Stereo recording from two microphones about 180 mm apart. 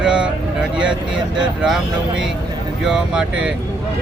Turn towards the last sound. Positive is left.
turn(degrees=-5)  # may be behind; listen again after turning